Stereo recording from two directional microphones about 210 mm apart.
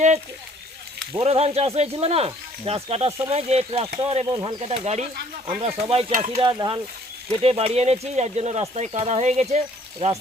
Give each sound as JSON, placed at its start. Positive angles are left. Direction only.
{"t": 1.2, "sound": "speech", "side_deg": -30}